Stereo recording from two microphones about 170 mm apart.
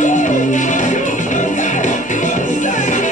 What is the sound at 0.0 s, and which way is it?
Music, 50° left (ahead or behind).